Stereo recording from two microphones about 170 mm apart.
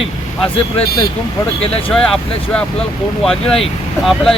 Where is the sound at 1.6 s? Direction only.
35° left (ahead or behind).